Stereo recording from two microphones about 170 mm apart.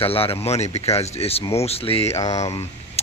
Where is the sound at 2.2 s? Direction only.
20° left (ahead or behind).